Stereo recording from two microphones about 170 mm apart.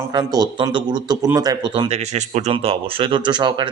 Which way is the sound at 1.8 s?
40° right (ahead or behind).